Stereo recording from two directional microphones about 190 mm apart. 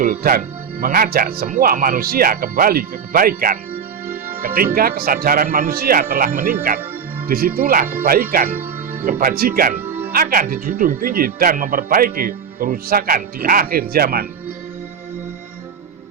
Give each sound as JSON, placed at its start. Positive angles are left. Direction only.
{"t": 0.0, "sound": "speech", "side_deg": -50}
{"t": 4.0, "sound": "music", "side_deg": -10}
{"t": 4.4, "sound": "speech", "side_deg": -50}
{"t": 8.4, "sound": "music", "side_deg": -10}
{"t": 9.0, "sound": "speech", "side_deg": -50}
{"t": 9.7, "sound": "music", "side_deg": -10}
{"t": 10.1, "sound": "speech", "side_deg": -50}